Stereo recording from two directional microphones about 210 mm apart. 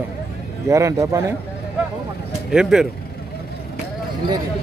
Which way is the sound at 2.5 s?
5° right (ahead or behind).